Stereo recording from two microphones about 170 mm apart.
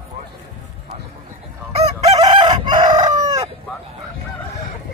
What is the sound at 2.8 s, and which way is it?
Chicken, 45° right (ahead or behind).